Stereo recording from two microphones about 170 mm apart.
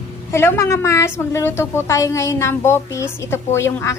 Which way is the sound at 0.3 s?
15° left (ahead or behind).